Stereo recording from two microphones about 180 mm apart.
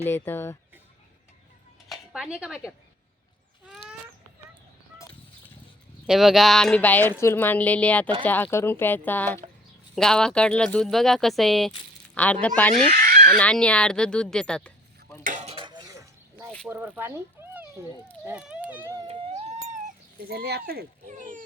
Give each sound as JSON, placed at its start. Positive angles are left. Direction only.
{"t": 0.0, "sound": "speech", "side_deg": 10}
{"t": 1.9, "sound": "speech", "side_deg": -5}
{"t": 6.1, "sound": "speech", "side_deg": 0}
{"t": 15.2, "sound": "cutlery", "side_deg": -45}
{"t": 16.6, "sound": "speech", "side_deg": -10}
{"t": 18.3, "sound": "a sound", "side_deg": -5}
{"t": 19.0, "sound": "a sound", "side_deg": -35}
{"t": 20.2, "sound": "speech", "side_deg": -60}
{"t": 21.1, "sound": "a sound", "side_deg": -45}